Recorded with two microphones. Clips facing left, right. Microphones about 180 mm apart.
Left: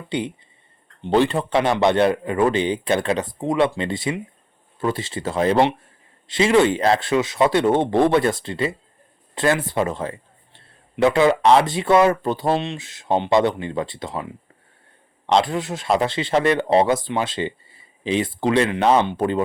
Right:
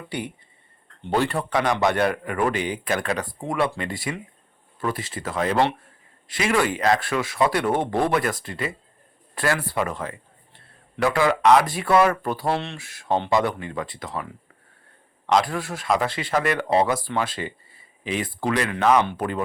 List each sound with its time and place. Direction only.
0.1 s speech: 20° left (ahead or behind)
15.3 s speech: 25° left (ahead or behind)